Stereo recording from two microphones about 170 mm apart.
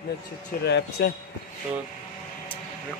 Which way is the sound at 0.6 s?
80° left.